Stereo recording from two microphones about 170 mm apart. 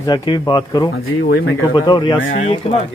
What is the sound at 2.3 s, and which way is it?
Speech, 40° left (ahead or behind).